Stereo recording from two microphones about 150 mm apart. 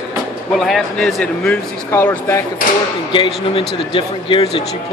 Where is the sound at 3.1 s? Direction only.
35° left (ahead or behind).